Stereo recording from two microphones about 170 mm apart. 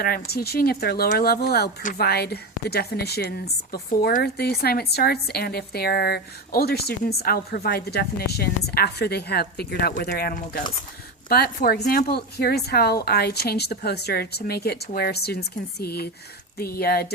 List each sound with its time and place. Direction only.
0.0 s speech: 60° left (ahead or behind)
9.9 s a woman's voice: 55° left (ahead or behind)